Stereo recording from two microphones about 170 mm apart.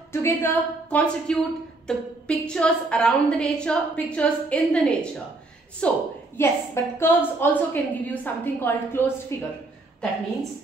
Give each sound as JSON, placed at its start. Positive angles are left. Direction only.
{"t": 0.1, "sound": "a woman's voice", "side_deg": 15}